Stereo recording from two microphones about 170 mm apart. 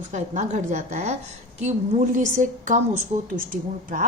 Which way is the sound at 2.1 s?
50° right (ahead or behind).